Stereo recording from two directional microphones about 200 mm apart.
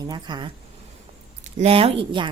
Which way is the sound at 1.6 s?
30° right (ahead or behind).